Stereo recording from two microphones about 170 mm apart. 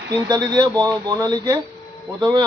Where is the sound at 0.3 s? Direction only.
25° right (ahead or behind).